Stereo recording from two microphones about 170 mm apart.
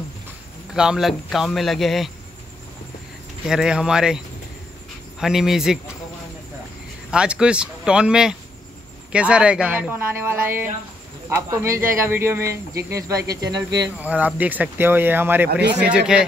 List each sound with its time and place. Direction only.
0.7 s speech: 5° right (ahead or behind)
3.4 s speech: 5° right (ahead or behind)
5.2 s speech: centre (ahead or behind)
7.1 s speech: 5° right (ahead or behind); by 13.7 s 20° right (ahead or behind)
13.9 s speech: 10° right (ahead or behind)